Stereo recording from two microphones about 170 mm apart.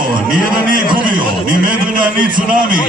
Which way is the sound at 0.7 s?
55° right (ahead or behind).